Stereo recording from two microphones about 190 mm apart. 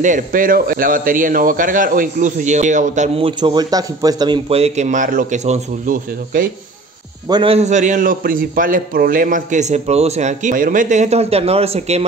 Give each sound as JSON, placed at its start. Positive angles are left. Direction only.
{"t": 0.0, "sound": "a man's voice", "side_deg": -45}
{"t": 7.2, "sound": "a man's voice", "side_deg": -25}